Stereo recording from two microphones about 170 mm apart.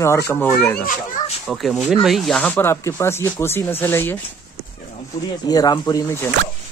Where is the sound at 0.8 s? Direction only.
45° left (ahead or behind).